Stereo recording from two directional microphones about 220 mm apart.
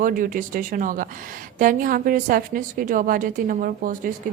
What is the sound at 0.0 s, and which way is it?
A woman's voice, 40° right (ahead or behind).